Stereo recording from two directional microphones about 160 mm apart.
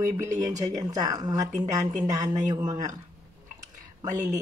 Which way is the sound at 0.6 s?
20° right (ahead or behind).